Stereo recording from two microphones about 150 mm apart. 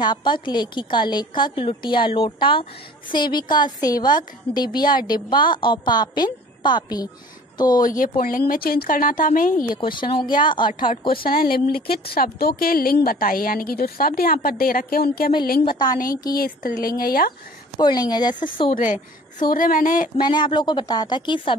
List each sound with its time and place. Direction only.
0.0 s a woman's voice: 30° left (ahead or behind)
7.8 s a woman's voice: 65° left (ahead or behind)
9.7 s a woman's voice: 30° left (ahead or behind)
11.1 s a woman's voice: 80° left
15.6 s a woman's voice: 30° left (ahead or behind)
16.0 s speech: 75° left (ahead or behind)
17.0 s speech: 90° left
17.7 s a woman's voice: 30° left (ahead or behind)
18.7 s a woman's voice: 60° left (ahead or behind)
20.2 s a woman's voice: 30° left (ahead or behind)